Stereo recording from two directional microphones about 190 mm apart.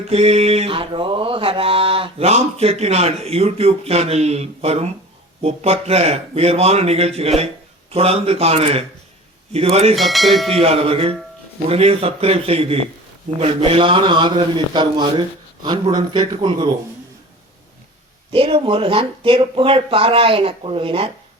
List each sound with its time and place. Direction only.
0.1 s mantra: 35° right (ahead or behind)
9.9 s speech: centre (ahead or behind)
10.6 s speech: 30° right (ahead or behind)
11.7 s mantra: 30° right (ahead or behind)
13.4 s speech: 30° right (ahead or behind)
18.3 s speech: 30° right (ahead or behind)